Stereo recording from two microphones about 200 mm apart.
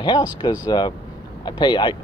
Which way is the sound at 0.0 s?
20° left (ahead or behind).